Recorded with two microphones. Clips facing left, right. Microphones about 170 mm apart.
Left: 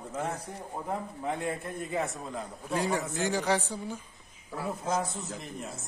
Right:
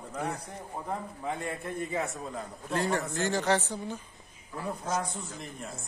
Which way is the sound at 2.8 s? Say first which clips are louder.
Even; 10° left (ahead or behind).